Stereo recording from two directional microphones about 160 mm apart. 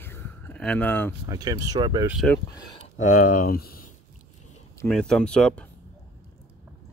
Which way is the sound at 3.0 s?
55° left (ahead or behind).